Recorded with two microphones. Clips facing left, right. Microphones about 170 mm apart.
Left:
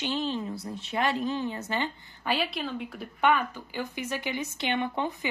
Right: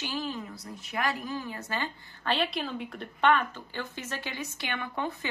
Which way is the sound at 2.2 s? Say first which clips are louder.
Even; 10° left (ahead or behind).